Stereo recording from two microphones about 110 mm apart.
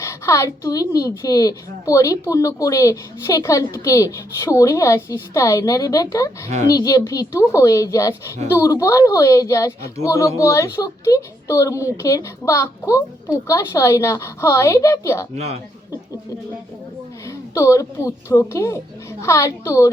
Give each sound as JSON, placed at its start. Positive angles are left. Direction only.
{"t": 0.0, "sound": "speech", "side_deg": 30}
{"t": 17.5, "sound": "speech", "side_deg": 30}